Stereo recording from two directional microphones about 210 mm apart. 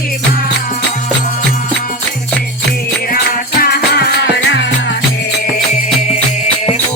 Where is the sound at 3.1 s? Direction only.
45° left (ahead or behind).